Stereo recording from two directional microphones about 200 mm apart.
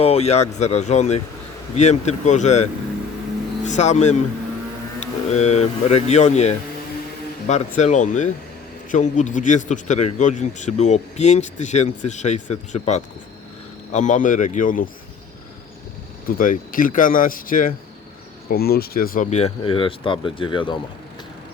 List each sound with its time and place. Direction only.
0.0 s a man's voice: 30° left (ahead or behind)
16.4 s a man's voice: 45° left (ahead or behind); by 20.7 s 25° left (ahead or behind)